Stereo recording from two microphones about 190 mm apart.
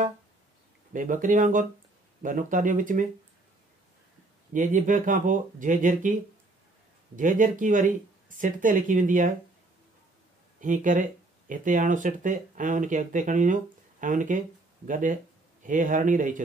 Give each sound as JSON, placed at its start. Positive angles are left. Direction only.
{"t": 0.9, "sound": "speech", "side_deg": -45}
{"t": 4.5, "sound": "speech", "side_deg": -40}
{"t": 7.2, "sound": "speech", "side_deg": -45}
{"t": 10.6, "sound": "speech", "side_deg": -45}